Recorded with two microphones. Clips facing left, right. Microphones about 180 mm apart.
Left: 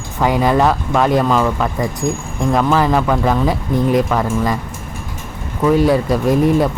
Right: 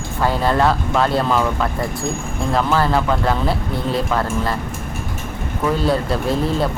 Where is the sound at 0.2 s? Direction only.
15° left (ahead or behind).